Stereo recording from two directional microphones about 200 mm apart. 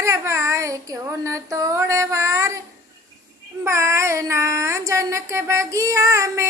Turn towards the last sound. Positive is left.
turn(degrees=-15)  # may be behind; listen again after turning